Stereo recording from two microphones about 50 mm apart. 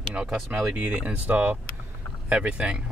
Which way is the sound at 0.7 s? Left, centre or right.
Right.